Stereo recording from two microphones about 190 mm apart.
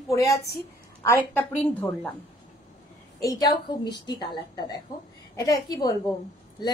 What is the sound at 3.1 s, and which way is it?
A woman's voice, 20° left (ahead or behind).